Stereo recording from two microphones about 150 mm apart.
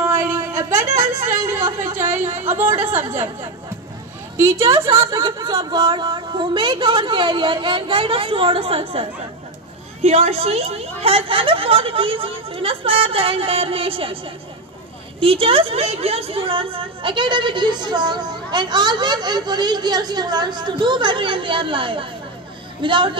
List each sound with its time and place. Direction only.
0.0 s a sound: 15° right (ahead or behind)
2.7 s a woman's voice: 45° right (ahead or behind)
4.4 s a woman's voice: 20° right (ahead or behind)
5.1 s a woman's voice: 30° right (ahead or behind)